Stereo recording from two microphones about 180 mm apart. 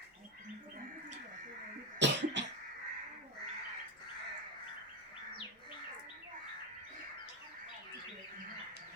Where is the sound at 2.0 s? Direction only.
75° right (ahead or behind).